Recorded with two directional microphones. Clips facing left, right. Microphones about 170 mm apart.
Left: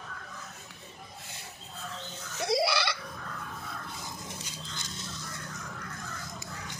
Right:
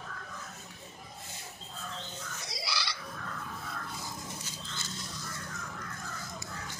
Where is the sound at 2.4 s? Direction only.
60° left (ahead or behind).